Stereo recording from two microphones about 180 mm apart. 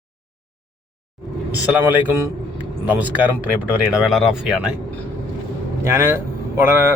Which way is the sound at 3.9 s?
Centre (ahead or behind).